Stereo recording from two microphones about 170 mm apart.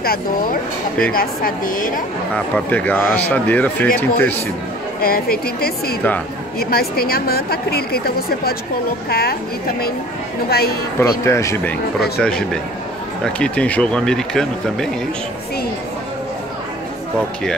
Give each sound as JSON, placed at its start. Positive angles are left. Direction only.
{"t": 0.0, "sound": "a woman's voice", "side_deg": 60}
{"t": 2.3, "sound": "speech", "side_deg": 10}
{"t": 5.0, "sound": "a woman's voice", "side_deg": 60}
{"t": 11.0, "sound": "speech", "side_deg": 15}